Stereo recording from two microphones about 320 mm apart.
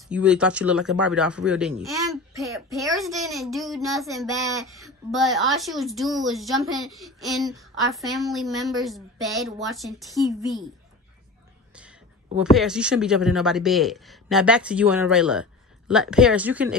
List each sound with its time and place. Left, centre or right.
0.1 s a woman's voice: centre
11.7 s whispering: centre
12.4 s a woman's voice: centre